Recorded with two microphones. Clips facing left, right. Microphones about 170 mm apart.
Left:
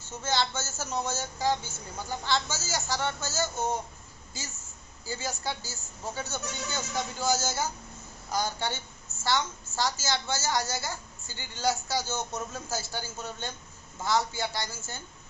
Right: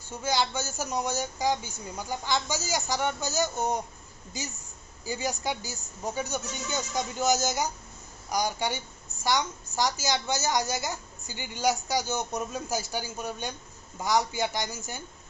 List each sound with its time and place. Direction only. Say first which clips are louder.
0.2 s a woman's voice: right 2 dB; 10° right (ahead or behind)